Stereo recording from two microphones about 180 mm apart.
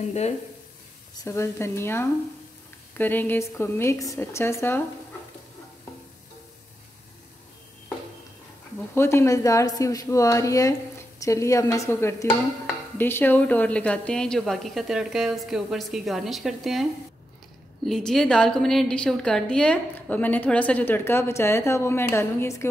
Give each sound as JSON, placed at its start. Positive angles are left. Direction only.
{"t": 1.1, "sound": "a woman's voice", "side_deg": 15}
{"t": 8.9, "sound": "a woman's voice", "side_deg": 15}
{"t": 17.8, "sound": "a woman's voice", "side_deg": 0}